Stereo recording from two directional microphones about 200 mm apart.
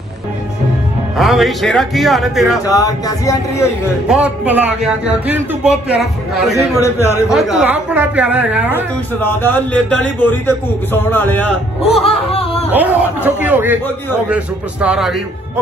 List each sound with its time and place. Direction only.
1.1 s speech: centre (ahead or behind)
2.6 s a man's voice: 15° left (ahead or behind)
4.1 s speech: 5° right (ahead or behind)
6.5 s a man's voice: 15° left (ahead or behind)
7.2 s a woman's voice: centre (ahead or behind)
9.2 s a man's voice: 10° left (ahead or behind)
11.9 s music: 30° left (ahead or behind)
12.7 s a woman's voice: 10° right (ahead or behind)